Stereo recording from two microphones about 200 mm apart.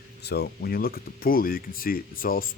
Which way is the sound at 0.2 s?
55° left (ahead or behind).